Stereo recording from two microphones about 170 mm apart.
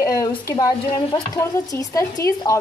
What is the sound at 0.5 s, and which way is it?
Speech, 20° left (ahead or behind).